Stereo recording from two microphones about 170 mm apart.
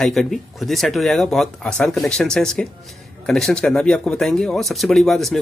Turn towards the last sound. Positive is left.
turn(degrees=0)  # may be behind; listen again after turning